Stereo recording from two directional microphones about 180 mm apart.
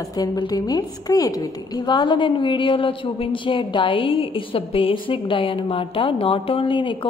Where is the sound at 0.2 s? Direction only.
20° left (ahead or behind).